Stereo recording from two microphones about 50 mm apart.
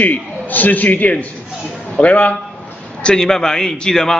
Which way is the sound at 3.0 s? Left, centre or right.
Centre.